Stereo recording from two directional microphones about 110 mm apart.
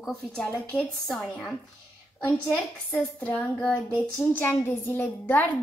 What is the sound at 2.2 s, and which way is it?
A woman's voice, 20° left (ahead or behind).